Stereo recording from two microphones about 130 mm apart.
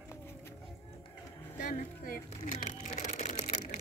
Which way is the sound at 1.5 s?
90° left.